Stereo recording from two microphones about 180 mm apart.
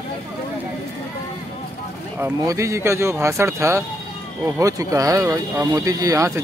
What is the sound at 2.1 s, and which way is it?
Speech, 15° right (ahead or behind).